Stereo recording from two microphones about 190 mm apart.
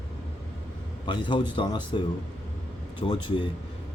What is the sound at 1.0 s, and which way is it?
Speech, 25° left (ahead or behind).